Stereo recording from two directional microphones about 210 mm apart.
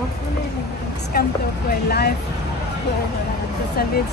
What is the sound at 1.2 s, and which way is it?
Speech, 50° left (ahead or behind).